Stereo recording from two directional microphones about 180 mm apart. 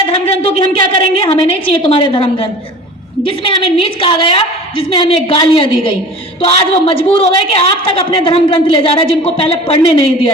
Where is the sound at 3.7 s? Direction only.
30° left (ahead or behind).